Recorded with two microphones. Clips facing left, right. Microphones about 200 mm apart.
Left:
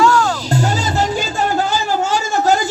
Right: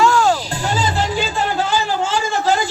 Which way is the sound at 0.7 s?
45° left (ahead or behind).